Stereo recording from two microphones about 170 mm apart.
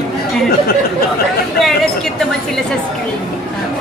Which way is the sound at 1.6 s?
Centre (ahead or behind).